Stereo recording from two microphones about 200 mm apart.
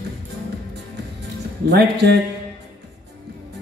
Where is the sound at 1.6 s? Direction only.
60° right (ahead or behind).